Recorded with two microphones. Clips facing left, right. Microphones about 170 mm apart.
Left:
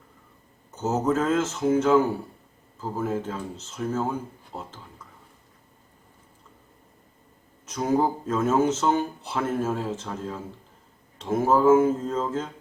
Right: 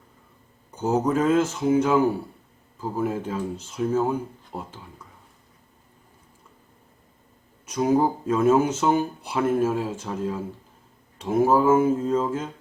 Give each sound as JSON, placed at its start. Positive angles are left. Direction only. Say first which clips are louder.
{"t": 0.8, "sound": "speech", "louder": "right 2 dB", "side_deg": -10}
{"t": 7.7, "sound": "speech", "louder": "right 3 dB", "side_deg": -10}